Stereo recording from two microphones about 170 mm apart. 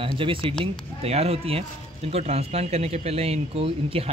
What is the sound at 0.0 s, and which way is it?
Speech, 30° right (ahead or behind).